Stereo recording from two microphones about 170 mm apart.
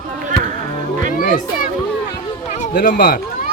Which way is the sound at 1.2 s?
55° left (ahead or behind).